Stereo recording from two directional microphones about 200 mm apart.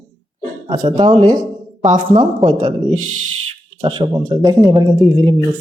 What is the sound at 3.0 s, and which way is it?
Speech, 90° right.